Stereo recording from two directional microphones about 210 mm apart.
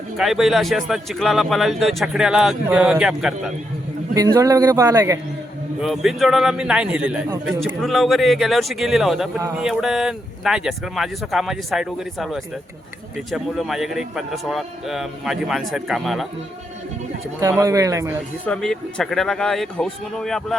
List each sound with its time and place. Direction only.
0.2 s speech: centre (ahead or behind)
4.1 s a man's voice: 15° right (ahead or behind)
5.8 s speech: centre (ahead or behind)
17.6 s a man's voice: 15° right (ahead or behind)
18.4 s speech: 5° left (ahead or behind)